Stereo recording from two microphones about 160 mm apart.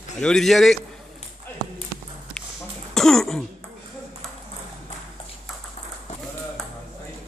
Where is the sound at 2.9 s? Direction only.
Centre (ahead or behind).